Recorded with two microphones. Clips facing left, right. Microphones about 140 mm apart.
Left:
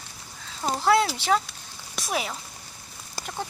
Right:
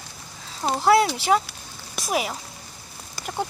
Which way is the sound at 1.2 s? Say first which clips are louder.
Right 3 dB; 10° right (ahead or behind).